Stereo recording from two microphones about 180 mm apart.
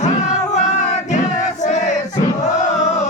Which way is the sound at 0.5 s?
40° left (ahead or behind).